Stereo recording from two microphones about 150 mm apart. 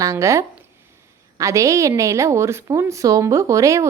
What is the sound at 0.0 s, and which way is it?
A woman's voice, 20° right (ahead or behind).